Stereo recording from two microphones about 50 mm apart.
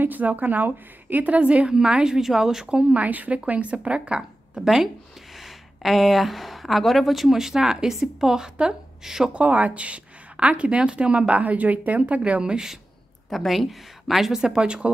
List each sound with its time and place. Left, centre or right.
0.0 s a woman's voice: right; by 2.8 s centre
2.8 s speech: right
4.6 s speech: centre
9.3 s speech: right
13.3 s speech: centre; by 14.9 s right